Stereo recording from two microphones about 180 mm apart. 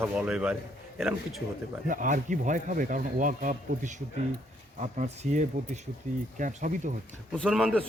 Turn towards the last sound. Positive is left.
turn(degrees=5)  # may be behind; listen again after turning